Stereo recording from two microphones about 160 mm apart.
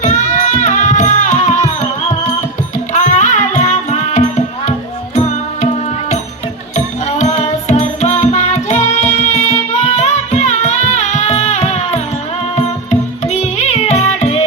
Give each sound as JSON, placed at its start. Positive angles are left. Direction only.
{"t": 0.0, "sound": "music", "side_deg": 50}
{"t": 6.7, "sound": "music", "side_deg": 45}
{"t": 12.5, "sound": "carnatic music", "side_deg": 45}